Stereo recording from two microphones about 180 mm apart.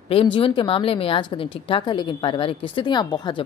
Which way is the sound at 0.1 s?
30° left (ahead or behind).